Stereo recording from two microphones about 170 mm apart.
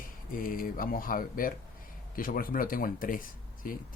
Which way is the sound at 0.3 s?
55° left (ahead or behind).